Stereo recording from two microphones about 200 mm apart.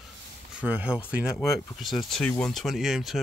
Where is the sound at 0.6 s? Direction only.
5° right (ahead or behind).